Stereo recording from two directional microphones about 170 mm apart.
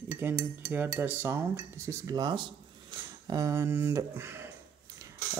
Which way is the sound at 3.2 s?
20° right (ahead or behind).